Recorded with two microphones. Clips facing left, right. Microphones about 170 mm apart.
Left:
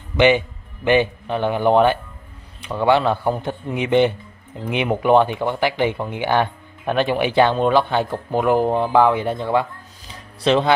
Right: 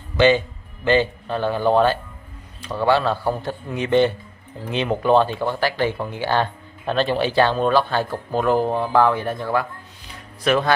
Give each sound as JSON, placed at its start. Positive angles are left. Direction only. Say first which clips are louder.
{"t": 0.8, "sound": "speech", "louder": "left 1 dB", "side_deg": 15}